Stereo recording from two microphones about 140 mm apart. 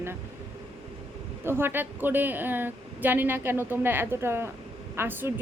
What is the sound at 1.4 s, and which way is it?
A woman's voice, 15° right (ahead or behind).